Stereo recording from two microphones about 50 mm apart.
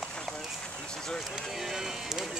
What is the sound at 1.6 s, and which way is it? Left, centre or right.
Speech, centre.